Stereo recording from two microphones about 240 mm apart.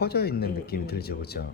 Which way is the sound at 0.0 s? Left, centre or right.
Left.